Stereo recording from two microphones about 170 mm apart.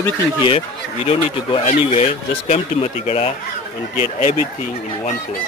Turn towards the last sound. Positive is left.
turn(degrees=50)  # may be behind; listen again after turning